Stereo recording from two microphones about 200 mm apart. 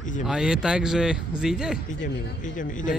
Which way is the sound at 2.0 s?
40° left (ahead or behind).